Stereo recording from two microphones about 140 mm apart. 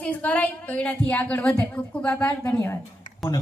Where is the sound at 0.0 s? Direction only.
10° left (ahead or behind).